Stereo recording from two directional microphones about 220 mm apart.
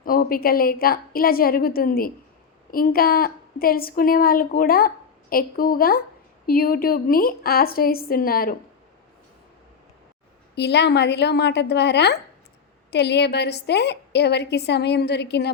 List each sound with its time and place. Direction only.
0.0 s a woman's voice: 40° left (ahead or behind)
10.5 s a woman's voice: 50° left (ahead or behind)